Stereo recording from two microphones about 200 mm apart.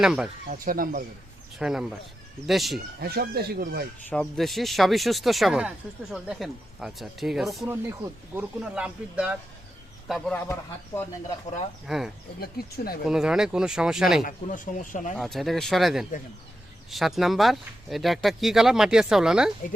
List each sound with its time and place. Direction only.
0.0 s speech: 5° right (ahead or behind)
0.4 s speech: 45° right (ahead or behind)
1.5 s speech: centre (ahead or behind)
3.0 s speech: 50° right (ahead or behind)
4.1 s speech: centre (ahead or behind)
10.1 s speech: 5° left (ahead or behind)
11.9 s speech: centre (ahead or behind)
12.4 s speech: 50° left (ahead or behind)
13.1 s speech: 5° right (ahead or behind)
14.3 s speech: 40° left (ahead or behind)
15.2 s speech: centre (ahead or behind)